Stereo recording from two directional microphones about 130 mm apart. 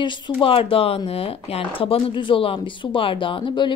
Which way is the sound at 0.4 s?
45° left (ahead or behind).